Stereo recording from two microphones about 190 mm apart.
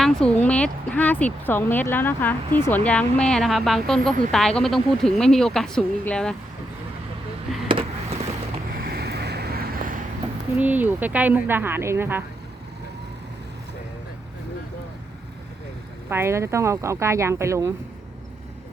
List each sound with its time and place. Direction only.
0.0 s a woman's voice: 5° left (ahead or behind)
7.7 s a sound: 30° right (ahead or behind)
8.7 s vehicle: 50° right (ahead or behind)
10.6 s speech: 10° right (ahead or behind)
16.0 s speech: 15° right (ahead or behind)